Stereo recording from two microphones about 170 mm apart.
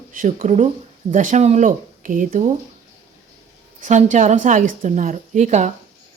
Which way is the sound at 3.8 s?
45° right (ahead or behind).